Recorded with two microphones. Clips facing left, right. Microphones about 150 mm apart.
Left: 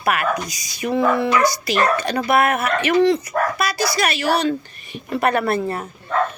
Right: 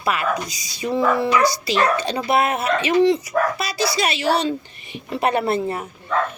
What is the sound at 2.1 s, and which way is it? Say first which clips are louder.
Speech: left 2 dB; 55° left (ahead or behind).